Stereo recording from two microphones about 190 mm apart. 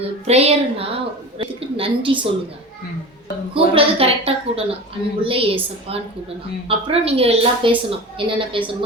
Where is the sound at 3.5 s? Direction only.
30° right (ahead or behind).